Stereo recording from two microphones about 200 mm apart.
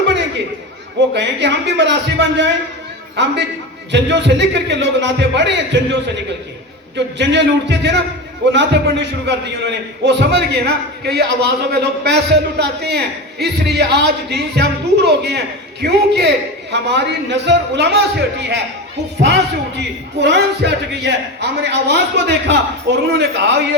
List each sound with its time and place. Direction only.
1.1 s a man's voice: 60° right (ahead or behind)
3.9 s a man's voice: 60° right (ahead or behind)